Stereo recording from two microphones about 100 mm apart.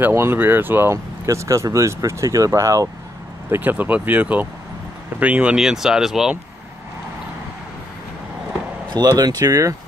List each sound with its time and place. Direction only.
0.0 s speech: 25° right (ahead or behind)
3.4 s speech: 20° right (ahead or behind); by 6.3 s 5° right (ahead or behind)
9.2 s speech: 35° right (ahead or behind)